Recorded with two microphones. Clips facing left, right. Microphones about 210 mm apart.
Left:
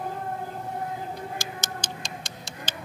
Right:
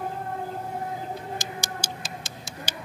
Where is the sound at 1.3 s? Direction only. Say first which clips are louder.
Right 1 dB; 15° right (ahead or behind).